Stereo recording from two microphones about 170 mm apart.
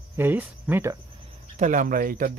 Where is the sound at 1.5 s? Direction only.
50° right (ahead or behind).